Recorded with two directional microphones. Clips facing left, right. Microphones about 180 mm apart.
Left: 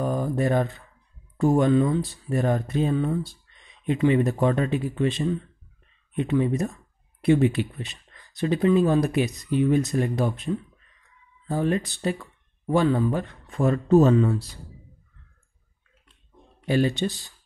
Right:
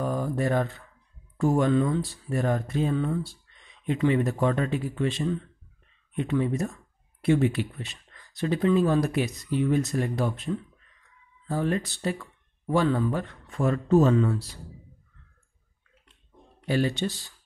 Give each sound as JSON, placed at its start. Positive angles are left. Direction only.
{"t": 0.0, "sound": "speech", "side_deg": 20}
{"t": 14.1, "sound": "speech", "side_deg": 20}
{"t": 16.6, "sound": "speech", "side_deg": 20}